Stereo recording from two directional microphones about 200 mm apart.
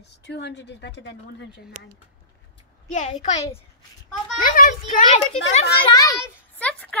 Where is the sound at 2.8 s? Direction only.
35° left (ahead or behind).